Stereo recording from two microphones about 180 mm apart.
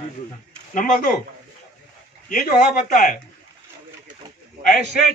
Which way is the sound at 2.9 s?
45° left (ahead or behind).